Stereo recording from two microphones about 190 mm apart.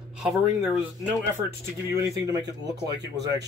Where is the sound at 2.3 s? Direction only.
20° right (ahead or behind).